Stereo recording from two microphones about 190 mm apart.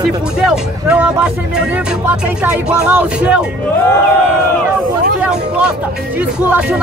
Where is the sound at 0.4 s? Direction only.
5° right (ahead or behind).